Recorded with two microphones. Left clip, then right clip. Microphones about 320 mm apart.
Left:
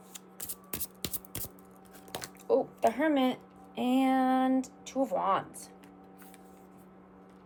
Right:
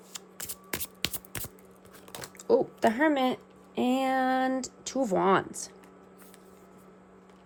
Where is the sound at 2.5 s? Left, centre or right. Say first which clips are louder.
Right 3 dB; right.